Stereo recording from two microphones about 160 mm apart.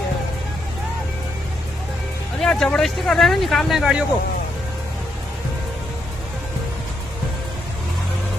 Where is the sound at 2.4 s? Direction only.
Centre (ahead or behind).